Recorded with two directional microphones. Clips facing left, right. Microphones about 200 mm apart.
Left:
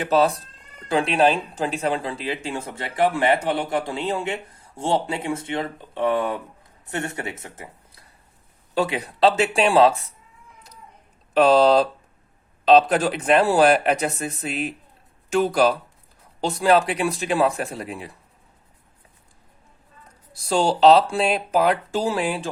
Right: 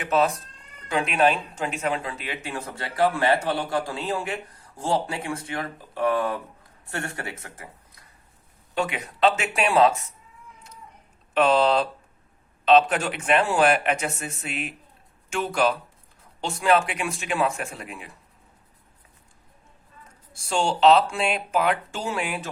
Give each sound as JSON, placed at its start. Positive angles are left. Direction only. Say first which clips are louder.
{"t": 0.0, "sound": "speech", "louder": "left 3 dB", "side_deg": 35}
{"t": 8.7, "sound": "speech", "louder": "left 4 dB", "side_deg": 35}
{"t": 11.3, "sound": "speech", "louder": "left 5 dB", "side_deg": 35}
{"t": 20.3, "sound": "speech", "louder": "left 4 dB", "side_deg": 35}